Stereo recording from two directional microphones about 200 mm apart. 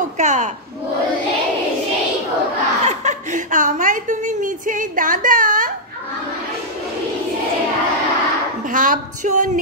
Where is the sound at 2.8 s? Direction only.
35° right (ahead or behind).